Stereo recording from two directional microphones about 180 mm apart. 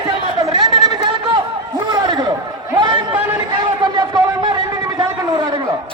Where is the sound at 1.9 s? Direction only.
20° right (ahead or behind).